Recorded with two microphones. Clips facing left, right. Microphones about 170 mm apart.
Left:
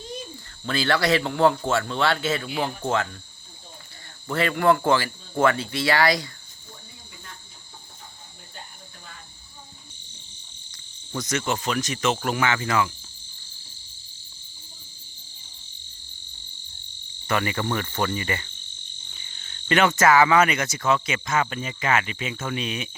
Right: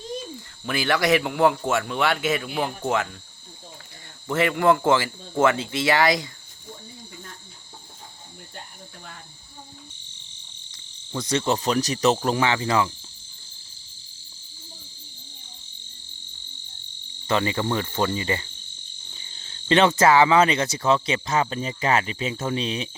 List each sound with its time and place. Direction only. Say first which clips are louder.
0.6 s speech: even; 15° right (ahead or behind)
4.3 s cricket: right 1 dB; 20° right (ahead or behind)
11.1 s cricket: right 3 dB; 30° right (ahead or behind)
17.2 s cricket: right 2 dB; 25° right (ahead or behind)